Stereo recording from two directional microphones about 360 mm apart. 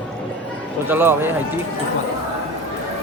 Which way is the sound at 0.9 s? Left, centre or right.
Centre.